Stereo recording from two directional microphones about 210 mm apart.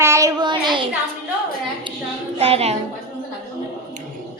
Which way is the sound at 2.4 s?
30° right (ahead or behind).